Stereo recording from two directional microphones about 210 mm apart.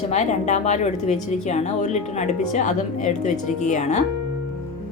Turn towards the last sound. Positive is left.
turn(degrees=35)  # may be behind; listen again after turning